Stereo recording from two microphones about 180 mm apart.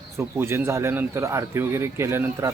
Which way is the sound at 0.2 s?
15° right (ahead or behind).